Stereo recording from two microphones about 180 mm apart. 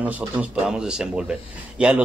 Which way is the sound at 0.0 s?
10° right (ahead or behind).